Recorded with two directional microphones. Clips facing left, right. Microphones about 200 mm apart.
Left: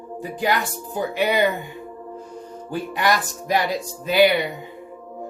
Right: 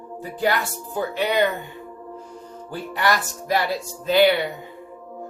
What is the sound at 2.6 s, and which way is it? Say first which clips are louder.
Speech: left 1 dB; 15° left (ahead or behind).